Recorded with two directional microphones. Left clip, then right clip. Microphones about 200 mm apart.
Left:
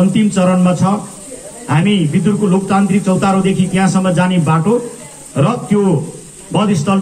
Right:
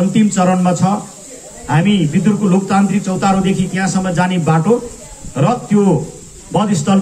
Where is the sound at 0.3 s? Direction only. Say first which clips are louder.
Even; 30° right (ahead or behind).